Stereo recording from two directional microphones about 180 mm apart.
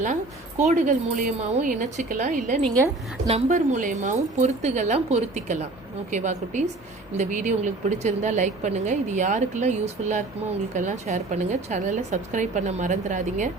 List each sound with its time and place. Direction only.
0.6 s a woman's voice: 45° right (ahead or behind)